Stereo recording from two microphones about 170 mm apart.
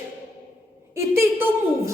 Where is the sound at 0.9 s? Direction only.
15° right (ahead or behind).